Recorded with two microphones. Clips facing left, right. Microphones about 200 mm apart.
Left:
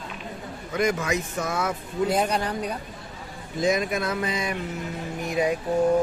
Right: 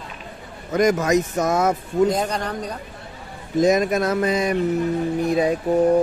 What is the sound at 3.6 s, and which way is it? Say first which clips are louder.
Speech: right 6 dB; 45° right (ahead or behind).